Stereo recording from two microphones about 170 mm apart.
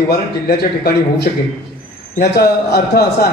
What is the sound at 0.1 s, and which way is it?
A man's voice, 70° left (ahead or behind).